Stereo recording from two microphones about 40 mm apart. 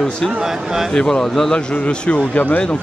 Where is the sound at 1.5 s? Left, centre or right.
Left.